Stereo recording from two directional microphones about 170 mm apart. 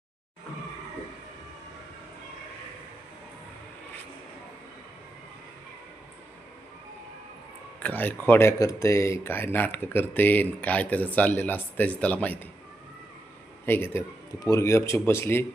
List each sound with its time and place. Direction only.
7.8 s speech: 10° left (ahead or behind)
13.7 s speech: 15° left (ahead or behind)